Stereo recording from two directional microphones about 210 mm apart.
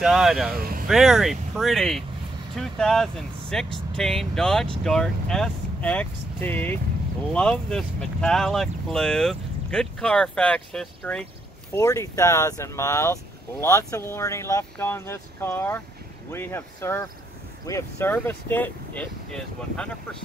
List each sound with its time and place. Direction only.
0.0 s speech: centre (ahead or behind)
0.6 s vehicle: 45° right (ahead or behind)
0.8 s speech: centre (ahead or behind)
11.7 s speech: 15° left (ahead or behind)